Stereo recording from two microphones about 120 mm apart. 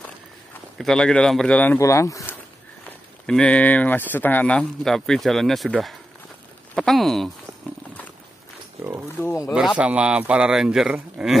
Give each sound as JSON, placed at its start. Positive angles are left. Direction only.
{"t": 0.7, "sound": "speech", "side_deg": 5}
{"t": 1.8, "sound": "speech", "side_deg": 25}
{"t": 3.3, "sound": "speech", "side_deg": 10}
{"t": 9.2, "sound": "speech", "side_deg": 20}
{"t": 9.5, "sound": "speech", "side_deg": -5}